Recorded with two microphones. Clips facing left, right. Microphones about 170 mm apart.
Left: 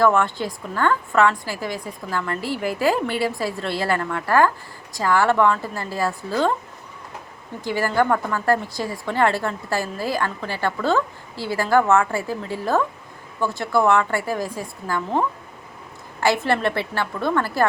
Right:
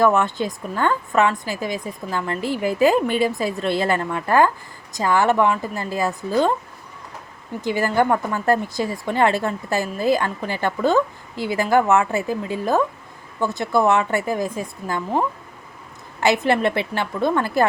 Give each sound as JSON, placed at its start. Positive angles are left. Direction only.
{"t": 0.0, "sound": "speech", "side_deg": -20}
{"t": 7.6, "sound": "speech", "side_deg": -20}
{"t": 16.2, "sound": "speech", "side_deg": -20}